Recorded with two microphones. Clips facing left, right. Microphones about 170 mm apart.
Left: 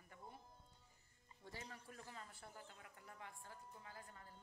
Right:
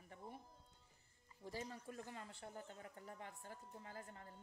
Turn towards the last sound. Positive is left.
turn(degrees=-45)  # may be behind; listen again after turning